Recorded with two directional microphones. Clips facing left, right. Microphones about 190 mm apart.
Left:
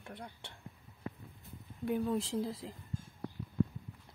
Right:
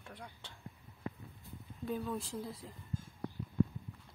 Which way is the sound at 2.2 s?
90° left.